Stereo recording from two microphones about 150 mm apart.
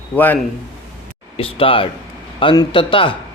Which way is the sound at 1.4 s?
40° left (ahead or behind).